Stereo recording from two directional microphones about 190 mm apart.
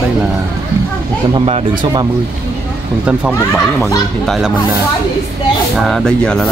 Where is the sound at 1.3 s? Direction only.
25° right (ahead or behind).